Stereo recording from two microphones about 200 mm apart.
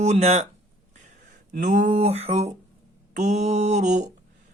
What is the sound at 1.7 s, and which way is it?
A man's voice, 35° right (ahead or behind).